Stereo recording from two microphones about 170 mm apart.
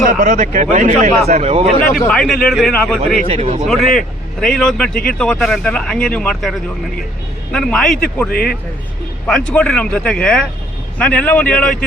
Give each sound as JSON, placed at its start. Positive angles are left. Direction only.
{"t": 0.0, "sound": "speech", "side_deg": -50}
{"t": 2.0, "sound": "speech", "side_deg": 5}
{"t": 3.2, "sound": "speech", "side_deg": -40}
{"t": 3.9, "sound": "speech", "side_deg": 5}
{"t": 8.3, "sound": "speech", "side_deg": 65}
{"t": 9.5, "sound": "speech", "side_deg": 5}